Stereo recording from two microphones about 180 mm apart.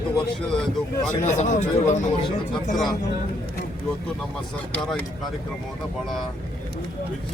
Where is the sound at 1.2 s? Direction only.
40° left (ahead or behind).